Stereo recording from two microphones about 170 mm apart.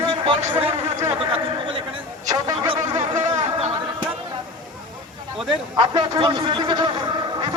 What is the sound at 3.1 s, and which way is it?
Chatter, 45° right (ahead or behind).